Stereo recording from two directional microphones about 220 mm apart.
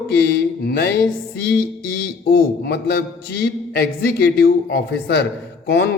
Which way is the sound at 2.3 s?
45° left (ahead or behind).